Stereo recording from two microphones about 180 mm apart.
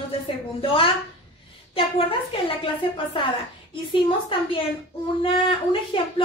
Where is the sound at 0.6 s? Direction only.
30° left (ahead or behind).